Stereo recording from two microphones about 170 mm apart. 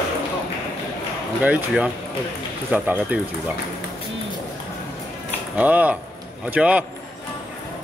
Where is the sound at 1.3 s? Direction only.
5° right (ahead or behind).